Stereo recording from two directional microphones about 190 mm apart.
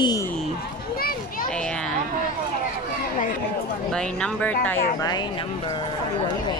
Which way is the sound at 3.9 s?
5° left (ahead or behind).